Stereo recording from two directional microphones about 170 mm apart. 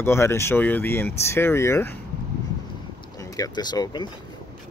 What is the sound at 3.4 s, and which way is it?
Speech, 25° left (ahead or behind).